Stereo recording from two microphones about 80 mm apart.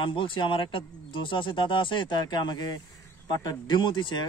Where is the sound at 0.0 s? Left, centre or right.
Left.